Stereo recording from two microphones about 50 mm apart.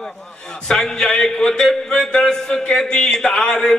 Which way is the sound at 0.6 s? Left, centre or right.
Centre.